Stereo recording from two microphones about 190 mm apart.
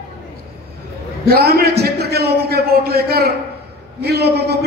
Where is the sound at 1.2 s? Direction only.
55° right (ahead or behind).